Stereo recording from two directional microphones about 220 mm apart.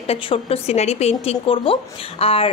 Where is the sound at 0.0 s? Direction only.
25° left (ahead or behind).